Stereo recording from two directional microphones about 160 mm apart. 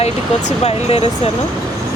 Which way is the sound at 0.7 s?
40° left (ahead or behind).